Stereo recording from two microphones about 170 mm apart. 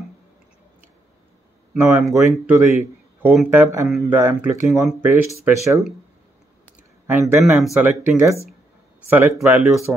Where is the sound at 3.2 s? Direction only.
5° right (ahead or behind).